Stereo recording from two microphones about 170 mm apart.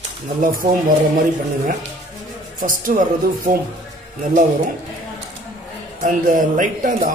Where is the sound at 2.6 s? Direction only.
50° right (ahead or behind).